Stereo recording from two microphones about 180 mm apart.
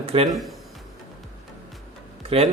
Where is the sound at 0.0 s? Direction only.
30° right (ahead or behind).